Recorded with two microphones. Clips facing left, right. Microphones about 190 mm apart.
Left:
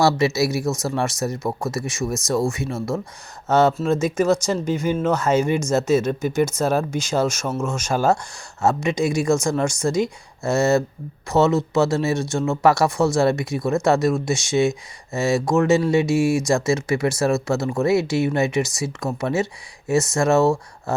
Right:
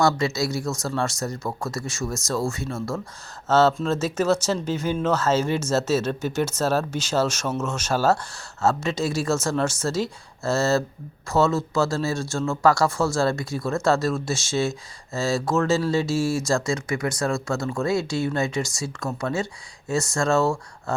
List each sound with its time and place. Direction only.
0.0 s speech: 20° left (ahead or behind)